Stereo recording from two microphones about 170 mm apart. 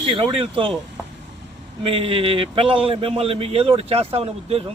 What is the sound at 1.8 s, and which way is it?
A man's voice, 30° right (ahead or behind).